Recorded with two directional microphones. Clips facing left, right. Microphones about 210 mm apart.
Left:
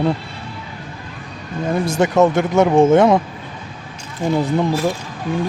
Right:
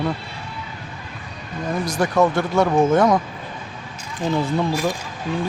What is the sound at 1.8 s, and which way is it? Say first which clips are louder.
Speech: left 4 dB; 25° left (ahead or behind).